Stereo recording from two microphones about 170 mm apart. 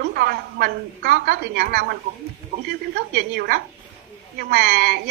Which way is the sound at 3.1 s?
65° right (ahead or behind).